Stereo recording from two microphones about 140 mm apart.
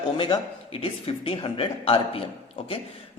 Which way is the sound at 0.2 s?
40° left (ahead or behind).